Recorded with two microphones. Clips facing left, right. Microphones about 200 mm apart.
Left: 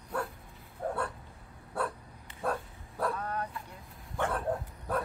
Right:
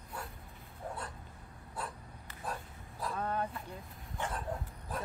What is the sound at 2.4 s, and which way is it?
Bow-wow, 60° left (ahead or behind).